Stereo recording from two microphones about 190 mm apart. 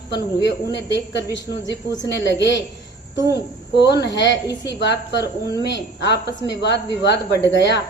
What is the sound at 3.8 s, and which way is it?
A woman's voice, 60° left (ahead or behind).